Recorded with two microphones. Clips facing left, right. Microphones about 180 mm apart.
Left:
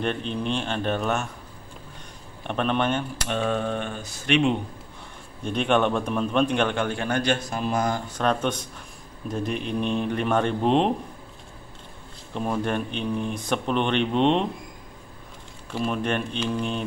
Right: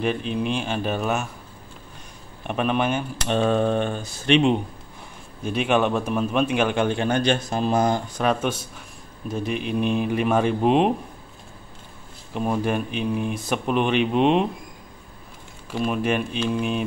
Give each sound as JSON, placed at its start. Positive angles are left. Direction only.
{"t": 0.0, "sound": "speech", "side_deg": -5}
{"t": 2.4, "sound": "speech", "side_deg": -5}
{"t": 3.2, "sound": "speech", "side_deg": -30}
{"t": 5.4, "sound": "speech", "side_deg": -5}
{"t": 6.8, "sound": "a man's voice", "side_deg": -20}
{"t": 8.1, "sound": "speech", "side_deg": -5}
{"t": 12.4, "sound": "speech", "side_deg": -5}
{"t": 15.7, "sound": "speech", "side_deg": -5}